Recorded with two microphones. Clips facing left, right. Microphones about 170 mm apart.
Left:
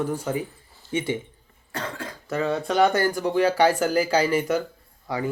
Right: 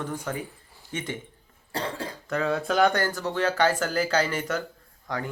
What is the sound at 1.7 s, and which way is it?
Speech, 30° right (ahead or behind).